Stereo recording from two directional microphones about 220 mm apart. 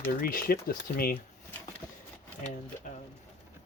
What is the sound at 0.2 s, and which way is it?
Speech, 40° left (ahead or behind).